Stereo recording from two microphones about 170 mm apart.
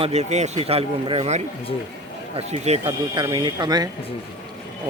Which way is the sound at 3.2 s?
25° right (ahead or behind).